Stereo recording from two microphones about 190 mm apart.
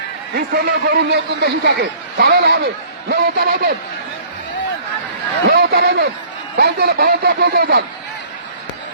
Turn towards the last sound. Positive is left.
turn(degrees=-55)  # may be behind; listen again after turning